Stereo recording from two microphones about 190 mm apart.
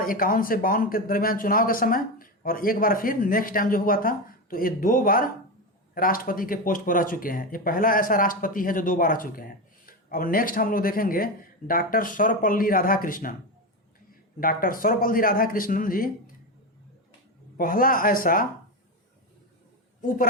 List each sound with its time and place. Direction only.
0.0 s speech: 50° left (ahead or behind)
14.4 s speech: 45° left (ahead or behind)
17.6 s speech: 45° left (ahead or behind)
20.0 s a woman's voice: 45° left (ahead or behind)